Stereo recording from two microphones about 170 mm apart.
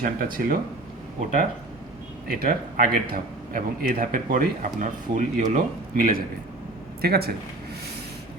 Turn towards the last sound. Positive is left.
turn(degrees=-65)  # may be behind; listen again after turning